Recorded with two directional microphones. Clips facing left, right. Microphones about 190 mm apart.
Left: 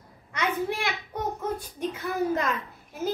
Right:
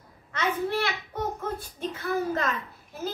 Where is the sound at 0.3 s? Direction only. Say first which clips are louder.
Right 1 dB; 15° left (ahead or behind).